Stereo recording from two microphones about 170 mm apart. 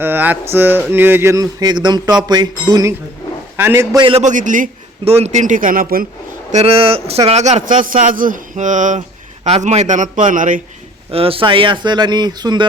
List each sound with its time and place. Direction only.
0.0 s speech: 10° right (ahead or behind)
3.9 s speech: 30° right (ahead or behind)
4.2 s a man's voice: 45° right (ahead or behind)
5.0 s a man's voice: 40° right (ahead or behind); by 6.1 s 60° right (ahead or behind)
6.5 s a man's voice: 35° right (ahead or behind)
11.1 s speech: 35° right (ahead or behind)